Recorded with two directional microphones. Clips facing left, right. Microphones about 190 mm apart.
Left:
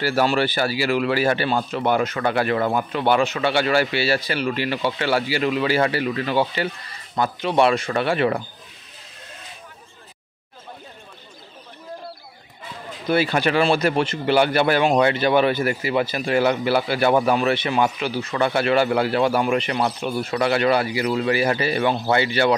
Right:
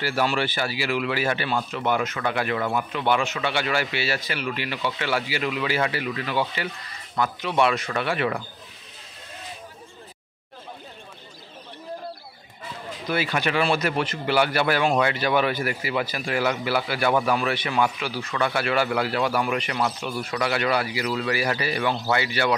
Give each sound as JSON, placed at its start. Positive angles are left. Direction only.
{"t": 0.0, "sound": "a man's voice", "side_deg": 40}
{"t": 13.1, "sound": "a man's voice", "side_deg": 30}